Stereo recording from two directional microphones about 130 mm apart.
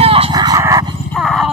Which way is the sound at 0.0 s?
45° right (ahead or behind).